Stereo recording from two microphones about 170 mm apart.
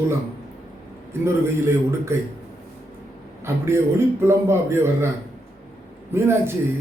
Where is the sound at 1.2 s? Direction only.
15° right (ahead or behind).